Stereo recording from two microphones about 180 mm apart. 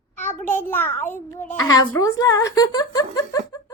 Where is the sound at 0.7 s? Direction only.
10° left (ahead or behind).